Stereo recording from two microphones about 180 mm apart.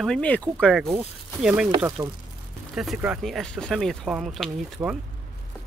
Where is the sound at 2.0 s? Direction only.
20° right (ahead or behind).